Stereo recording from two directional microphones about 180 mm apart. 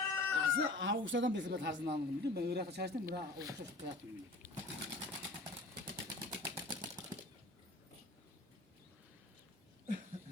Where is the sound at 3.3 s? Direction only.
20° right (ahead or behind).